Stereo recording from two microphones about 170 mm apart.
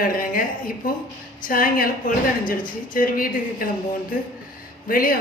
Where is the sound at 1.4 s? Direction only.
55° left (ahead or behind).